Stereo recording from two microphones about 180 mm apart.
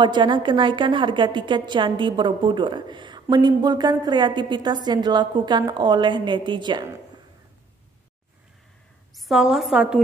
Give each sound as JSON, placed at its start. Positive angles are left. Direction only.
{"t": 0.0, "sound": "a woman's voice", "side_deg": -25}
{"t": 9.1, "sound": "a woman's voice", "side_deg": 0}